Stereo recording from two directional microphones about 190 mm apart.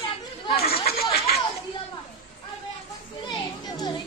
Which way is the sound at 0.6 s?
55° left (ahead or behind).